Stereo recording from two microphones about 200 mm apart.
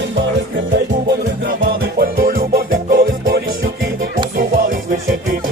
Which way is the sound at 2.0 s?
45° right (ahead or behind).